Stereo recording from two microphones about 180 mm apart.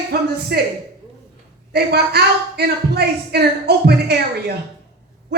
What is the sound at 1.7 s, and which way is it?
A woman's voice, 65° right (ahead or behind).